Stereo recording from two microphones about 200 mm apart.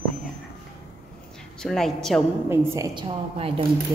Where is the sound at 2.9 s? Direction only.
25° right (ahead or behind).